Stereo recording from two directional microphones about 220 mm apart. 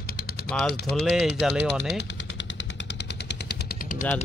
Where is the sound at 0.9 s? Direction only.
Centre (ahead or behind).